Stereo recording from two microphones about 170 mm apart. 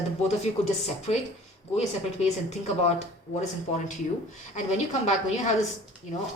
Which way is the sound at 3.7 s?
45° left (ahead or behind).